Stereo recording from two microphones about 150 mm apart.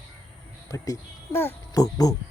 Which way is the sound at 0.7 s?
20° left (ahead or behind).